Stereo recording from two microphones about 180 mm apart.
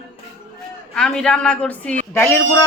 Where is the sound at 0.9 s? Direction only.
5° left (ahead or behind).